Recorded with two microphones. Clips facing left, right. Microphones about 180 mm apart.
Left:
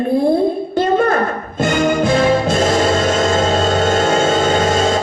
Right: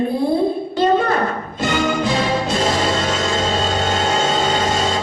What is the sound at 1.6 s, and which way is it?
Music, 50° left (ahead or behind).